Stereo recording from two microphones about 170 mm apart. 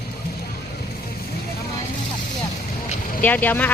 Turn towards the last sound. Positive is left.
turn(degrees=10)  # may be behind; listen again after turning